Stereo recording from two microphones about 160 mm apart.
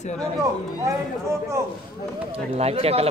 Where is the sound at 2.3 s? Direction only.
40° right (ahead or behind).